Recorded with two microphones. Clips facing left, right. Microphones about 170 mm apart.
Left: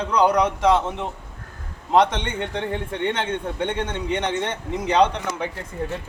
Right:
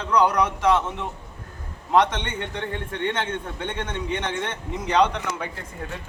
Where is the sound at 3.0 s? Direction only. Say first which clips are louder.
Left 2 dB; 20° left (ahead or behind).